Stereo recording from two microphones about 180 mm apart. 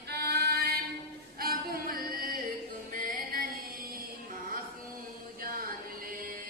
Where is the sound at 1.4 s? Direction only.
55° right (ahead or behind).